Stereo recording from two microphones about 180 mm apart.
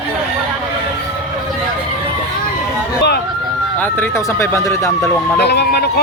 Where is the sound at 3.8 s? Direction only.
15° left (ahead or behind).